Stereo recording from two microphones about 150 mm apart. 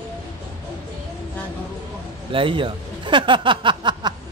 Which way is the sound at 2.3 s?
35° right (ahead or behind).